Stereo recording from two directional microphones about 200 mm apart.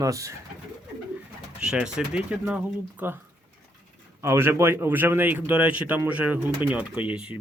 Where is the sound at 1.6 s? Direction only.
5° right (ahead or behind).